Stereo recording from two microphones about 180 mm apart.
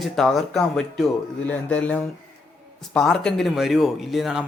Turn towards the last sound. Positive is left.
turn(degrees=0)  # may be behind; listen again after turning